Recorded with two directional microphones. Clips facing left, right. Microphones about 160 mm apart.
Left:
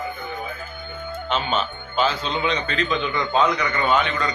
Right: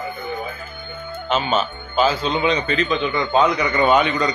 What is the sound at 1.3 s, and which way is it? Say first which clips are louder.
A man's voice: right 4 dB; 5° right (ahead or behind).